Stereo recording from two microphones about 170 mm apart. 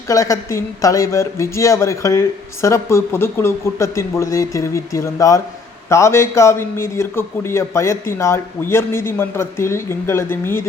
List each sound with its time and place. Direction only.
0.1 s speech: 20° left (ahead or behind)